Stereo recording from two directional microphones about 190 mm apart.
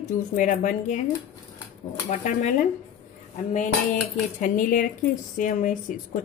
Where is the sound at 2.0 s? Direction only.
40° left (ahead or behind).